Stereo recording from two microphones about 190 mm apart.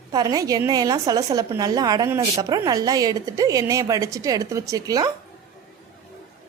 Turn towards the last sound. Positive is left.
turn(degrees=-20)  # may be behind; listen again after turning